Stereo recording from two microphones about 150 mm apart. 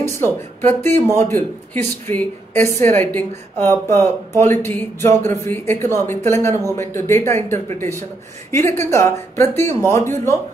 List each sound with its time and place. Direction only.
0.0 s a man's voice: 15° left (ahead or behind)